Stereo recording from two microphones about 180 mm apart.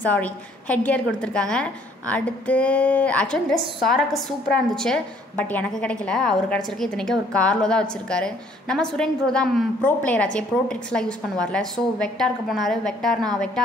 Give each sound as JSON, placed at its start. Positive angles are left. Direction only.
{"t": 0.0, "sound": "a woman's voice", "side_deg": 10}